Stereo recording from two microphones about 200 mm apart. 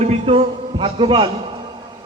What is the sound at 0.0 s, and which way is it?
A man's voice, 30° right (ahead or behind).